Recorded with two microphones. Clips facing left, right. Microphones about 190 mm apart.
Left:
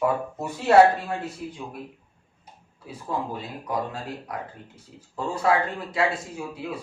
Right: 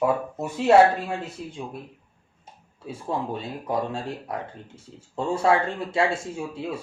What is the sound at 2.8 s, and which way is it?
Speech, 25° right (ahead or behind).